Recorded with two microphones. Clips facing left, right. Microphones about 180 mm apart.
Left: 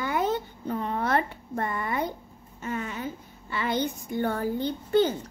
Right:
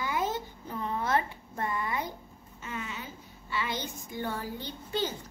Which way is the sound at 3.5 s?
55° left (ahead or behind).